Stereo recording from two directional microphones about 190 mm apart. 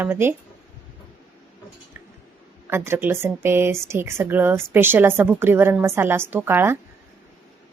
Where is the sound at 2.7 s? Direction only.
10° right (ahead or behind).